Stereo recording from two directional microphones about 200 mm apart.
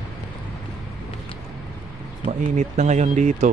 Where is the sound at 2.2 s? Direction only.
35° right (ahead or behind).